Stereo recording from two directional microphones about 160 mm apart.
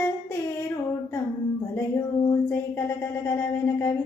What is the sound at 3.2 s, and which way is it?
Child singing, 15° left (ahead or behind).